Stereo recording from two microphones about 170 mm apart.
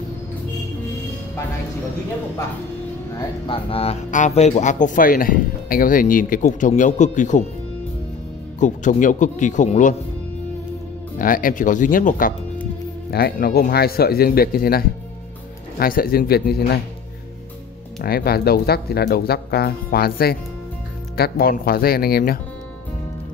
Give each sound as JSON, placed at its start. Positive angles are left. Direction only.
{"t": 3.4, "sound": "speech", "side_deg": 30}
{"t": 8.5, "sound": "speech", "side_deg": 45}
{"t": 11.1, "sound": "speech", "side_deg": 55}
{"t": 13.1, "sound": "speech", "side_deg": 65}
{"t": 18.0, "sound": "speech", "side_deg": 65}